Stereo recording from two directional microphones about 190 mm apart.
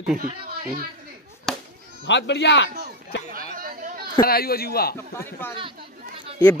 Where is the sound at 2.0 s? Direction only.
70° left (ahead or behind).